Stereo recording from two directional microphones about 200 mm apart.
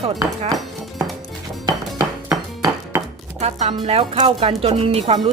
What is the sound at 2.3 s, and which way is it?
Music, 15° right (ahead or behind).